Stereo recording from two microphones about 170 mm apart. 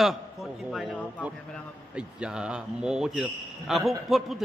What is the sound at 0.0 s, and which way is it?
A man's voice, centre (ahead or behind).